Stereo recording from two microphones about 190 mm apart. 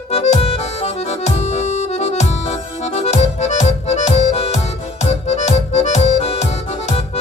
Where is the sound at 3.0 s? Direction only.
35° left (ahead or behind).